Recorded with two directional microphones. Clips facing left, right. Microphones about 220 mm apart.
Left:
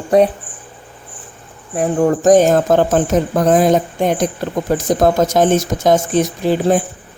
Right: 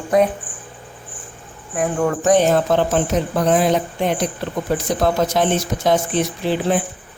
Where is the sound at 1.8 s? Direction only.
35° left (ahead or behind).